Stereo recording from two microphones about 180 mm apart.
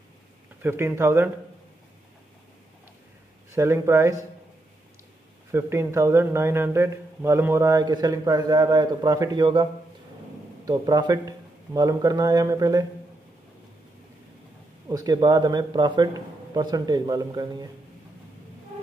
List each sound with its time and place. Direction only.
0.6 s a man's voice: 10° right (ahead or behind)
3.5 s a man's voice: 15° right (ahead or behind)
5.5 s a man's voice: 15° right (ahead or behind)
14.9 s a man's voice: 20° right (ahead or behind)